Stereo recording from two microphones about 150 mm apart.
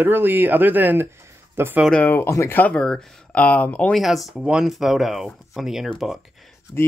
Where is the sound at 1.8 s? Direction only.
10° left (ahead or behind).